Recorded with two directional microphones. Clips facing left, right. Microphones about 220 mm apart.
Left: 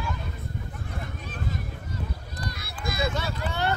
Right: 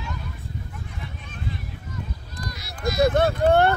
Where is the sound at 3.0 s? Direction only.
55° right (ahead or behind).